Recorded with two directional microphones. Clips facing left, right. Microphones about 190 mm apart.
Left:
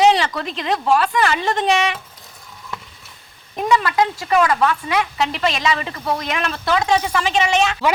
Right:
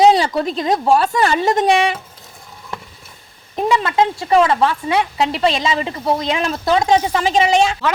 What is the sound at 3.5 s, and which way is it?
Speech, 30° right (ahead or behind).